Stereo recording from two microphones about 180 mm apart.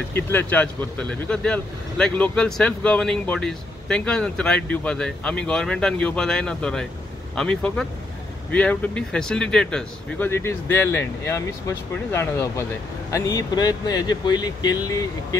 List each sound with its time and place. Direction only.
0.1 s speech: 10° left (ahead or behind)